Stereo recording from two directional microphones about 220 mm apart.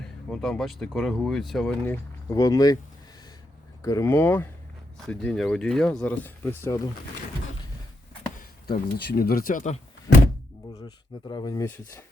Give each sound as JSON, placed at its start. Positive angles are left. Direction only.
{"t": 0.0, "sound": "speech", "side_deg": 0}
{"t": 2.3, "sound": "speech", "side_deg": 15}
{"t": 3.8, "sound": "speech", "side_deg": 10}
{"t": 8.4, "sound": "speech", "side_deg": 45}
{"t": 10.8, "sound": "speech", "side_deg": 20}